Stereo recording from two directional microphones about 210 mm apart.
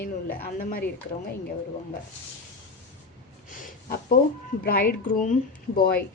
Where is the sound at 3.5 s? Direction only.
40° left (ahead or behind).